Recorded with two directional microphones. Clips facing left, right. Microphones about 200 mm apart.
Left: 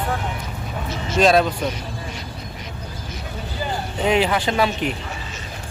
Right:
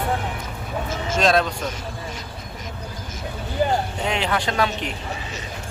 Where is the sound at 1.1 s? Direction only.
5° left (ahead or behind).